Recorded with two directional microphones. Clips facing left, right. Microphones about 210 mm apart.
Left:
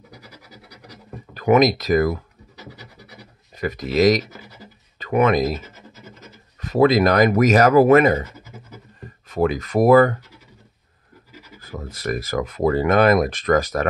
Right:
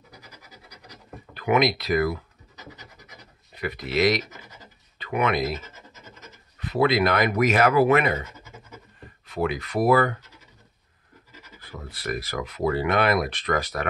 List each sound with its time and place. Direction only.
1.3 s speech: 45° left (ahead or behind)
3.5 s speech: 45° left (ahead or behind)
6.6 s speech: 45° left (ahead or behind)
9.3 s speech: 45° left (ahead or behind)
11.6 s speech: 45° left (ahead or behind)